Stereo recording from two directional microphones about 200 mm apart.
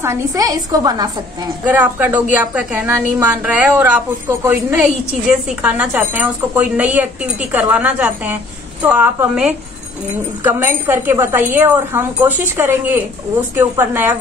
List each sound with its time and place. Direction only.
0.0 s a woman's voice: 15° right (ahead or behind)